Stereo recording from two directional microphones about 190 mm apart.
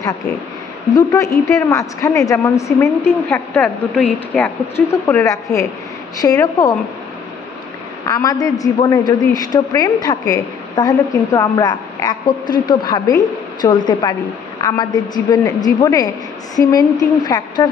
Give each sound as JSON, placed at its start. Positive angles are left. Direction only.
{"t": 0.9, "sound": "a woman's voice", "side_deg": 15}
{"t": 3.6, "sound": "a woman's voice", "side_deg": 0}
{"t": 8.1, "sound": "a woman's voice", "side_deg": 20}